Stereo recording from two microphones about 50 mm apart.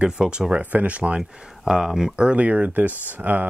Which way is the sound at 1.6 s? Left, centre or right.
Centre.